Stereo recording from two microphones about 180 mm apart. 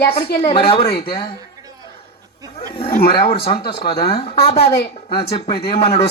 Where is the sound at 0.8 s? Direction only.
55° left (ahead or behind).